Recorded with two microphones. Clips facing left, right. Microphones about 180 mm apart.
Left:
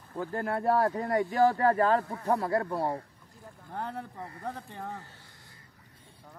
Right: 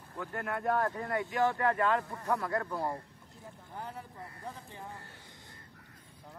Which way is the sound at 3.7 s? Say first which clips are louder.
Left 7 dB; 60° left (ahead or behind).